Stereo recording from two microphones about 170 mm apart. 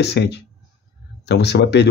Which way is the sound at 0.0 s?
80° left.